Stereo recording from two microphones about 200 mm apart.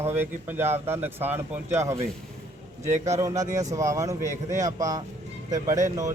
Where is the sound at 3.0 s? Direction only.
15° right (ahead or behind).